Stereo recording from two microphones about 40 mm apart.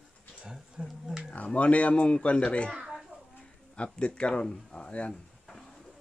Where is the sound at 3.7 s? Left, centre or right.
Left.